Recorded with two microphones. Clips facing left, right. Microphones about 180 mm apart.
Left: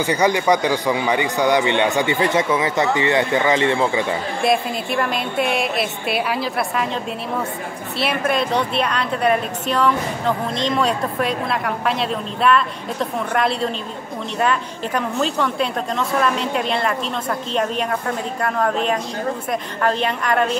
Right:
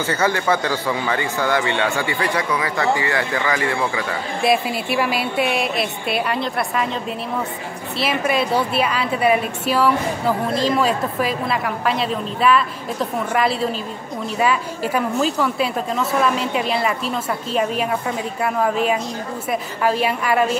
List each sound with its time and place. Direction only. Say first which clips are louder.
0.0 s speech: left 3 dB; 15° left (ahead or behind)
4.4 s a woman's voice: right 2 dB; 5° right (ahead or behind)
8.0 s a woman's voice: even; centre (ahead or behind)